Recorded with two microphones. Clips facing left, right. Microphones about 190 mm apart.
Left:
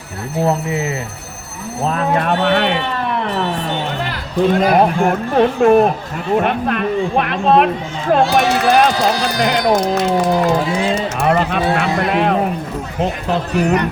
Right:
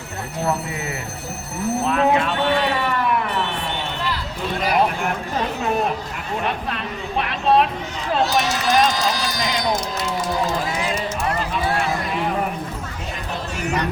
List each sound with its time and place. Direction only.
0.4 s speech: 20° left (ahead or behind)
2.1 s speech: 60° left (ahead or behind)
3.2 s speech: 35° left (ahead or behind)
4.6 s speech: 50° left (ahead or behind); by 12.4 s 75° left (ahead or behind)
13.0 s speech: 60° left (ahead or behind)